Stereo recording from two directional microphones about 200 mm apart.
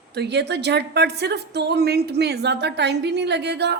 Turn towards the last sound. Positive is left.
turn(degrees=-55)  # may be behind; listen again after turning